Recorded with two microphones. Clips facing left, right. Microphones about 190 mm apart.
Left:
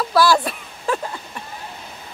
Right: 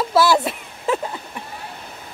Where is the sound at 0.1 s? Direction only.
25° right (ahead or behind).